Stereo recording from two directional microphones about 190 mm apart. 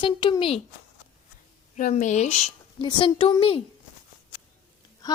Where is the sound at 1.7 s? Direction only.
40° left (ahead or behind).